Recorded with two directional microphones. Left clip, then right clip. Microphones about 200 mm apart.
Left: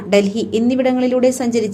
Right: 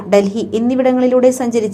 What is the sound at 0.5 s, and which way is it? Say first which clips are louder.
A woman's voice: right 3 dB; centre (ahead or behind).